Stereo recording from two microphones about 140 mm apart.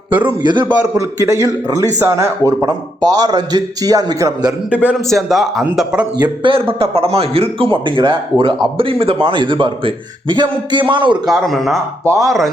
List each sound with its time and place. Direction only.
0.1 s a man's voice: 10° right (ahead or behind)
0.4 s a man's voice: 35° right (ahead or behind)
0.8 s a man's voice: 20° right (ahead or behind)
4.7 s a man's voice: 10° right (ahead or behind)
4.9 s speech: centre (ahead or behind)
6.2 s a man's voice: 40° right (ahead or behind)
11.3 s speech: centre (ahead or behind)
12.0 s a man's voice: 25° right (ahead or behind)